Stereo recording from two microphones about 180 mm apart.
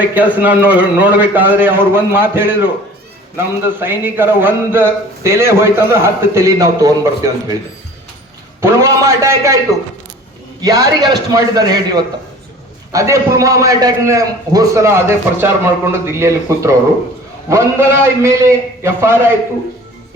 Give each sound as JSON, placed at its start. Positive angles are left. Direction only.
{"t": 0.0, "sound": "a man's voice", "side_deg": -10}
{"t": 8.6, "sound": "a man's voice", "side_deg": -15}
{"t": 10.6, "sound": "a man's voice", "side_deg": -20}